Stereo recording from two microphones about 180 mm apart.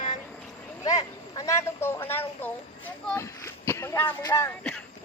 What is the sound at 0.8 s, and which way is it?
Speech, 20° left (ahead or behind).